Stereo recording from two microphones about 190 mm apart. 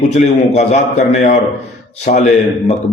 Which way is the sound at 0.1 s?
35° left (ahead or behind).